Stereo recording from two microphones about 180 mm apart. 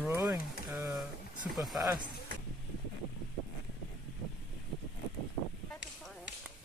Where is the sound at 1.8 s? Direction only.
20° right (ahead or behind).